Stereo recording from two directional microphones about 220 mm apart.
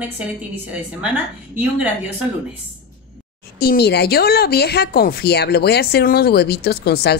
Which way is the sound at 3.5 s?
45° left (ahead or behind).